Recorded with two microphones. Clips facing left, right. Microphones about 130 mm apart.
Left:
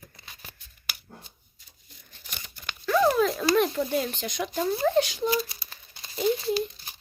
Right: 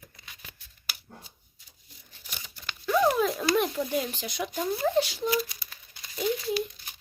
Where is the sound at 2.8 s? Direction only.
15° right (ahead or behind).